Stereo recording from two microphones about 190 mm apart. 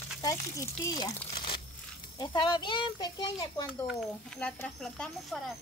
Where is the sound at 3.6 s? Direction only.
Centre (ahead or behind).